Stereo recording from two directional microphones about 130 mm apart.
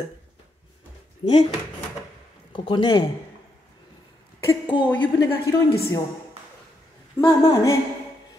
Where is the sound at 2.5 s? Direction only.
35° left (ahead or behind).